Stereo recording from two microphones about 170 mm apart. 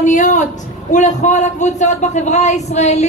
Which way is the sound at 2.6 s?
40° left (ahead or behind).